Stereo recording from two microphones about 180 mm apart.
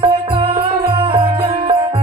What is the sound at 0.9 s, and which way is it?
Music, 30° right (ahead or behind).